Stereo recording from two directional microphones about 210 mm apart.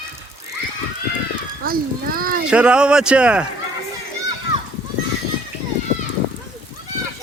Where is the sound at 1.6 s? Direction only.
45° right (ahead or behind).